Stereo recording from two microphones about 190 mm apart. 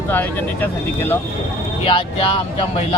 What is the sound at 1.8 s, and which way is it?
Speech, 30° left (ahead or behind).